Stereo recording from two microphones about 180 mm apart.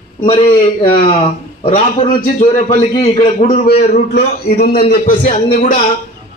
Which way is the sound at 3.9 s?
60° left (ahead or behind).